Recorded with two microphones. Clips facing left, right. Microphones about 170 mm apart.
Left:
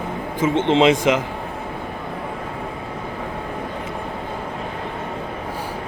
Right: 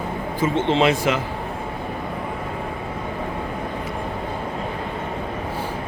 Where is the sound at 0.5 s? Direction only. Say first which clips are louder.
Left 4 dB; 20° left (ahead or behind).